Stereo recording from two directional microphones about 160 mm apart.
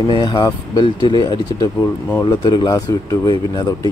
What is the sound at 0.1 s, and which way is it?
Speech, 30° left (ahead or behind).